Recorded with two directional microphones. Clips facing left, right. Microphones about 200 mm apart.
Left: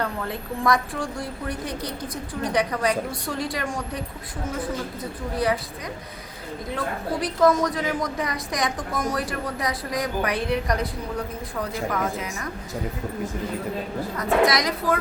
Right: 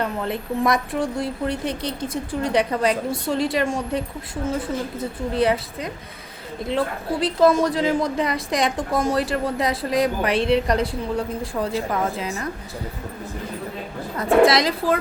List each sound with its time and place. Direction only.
0.0 s a woman's voice: 20° right (ahead or behind)
14.2 s a woman's voice: 30° right (ahead or behind)